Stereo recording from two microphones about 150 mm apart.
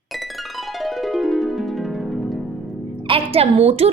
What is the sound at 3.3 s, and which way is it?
Speech, 40° right (ahead or behind).